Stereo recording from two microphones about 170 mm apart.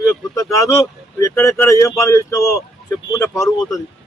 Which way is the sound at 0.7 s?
20° left (ahead or behind).